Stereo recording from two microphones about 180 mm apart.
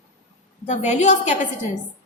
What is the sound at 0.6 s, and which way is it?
Speech, 40° left (ahead or behind).